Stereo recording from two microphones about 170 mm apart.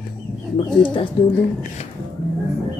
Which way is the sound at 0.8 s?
30° left (ahead or behind).